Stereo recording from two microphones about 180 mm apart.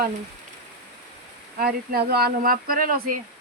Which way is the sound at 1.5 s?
55° right (ahead or behind).